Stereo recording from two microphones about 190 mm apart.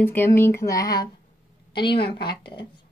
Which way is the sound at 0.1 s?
10° left (ahead or behind).